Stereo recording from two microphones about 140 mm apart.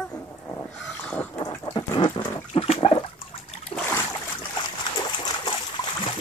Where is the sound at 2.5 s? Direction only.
45° left (ahead or behind).